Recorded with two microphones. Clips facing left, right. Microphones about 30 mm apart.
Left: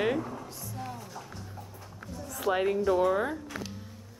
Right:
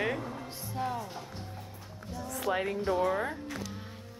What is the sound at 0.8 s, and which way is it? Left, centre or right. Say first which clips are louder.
Music: right 7 dB; right.